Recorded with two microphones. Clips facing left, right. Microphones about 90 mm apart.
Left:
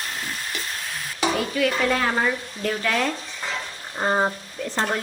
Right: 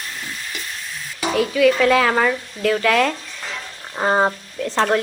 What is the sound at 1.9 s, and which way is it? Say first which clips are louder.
Speech: right 6 dB; 90° right.